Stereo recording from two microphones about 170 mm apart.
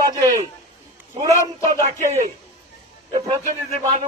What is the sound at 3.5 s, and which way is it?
Speech, 35° right (ahead or behind).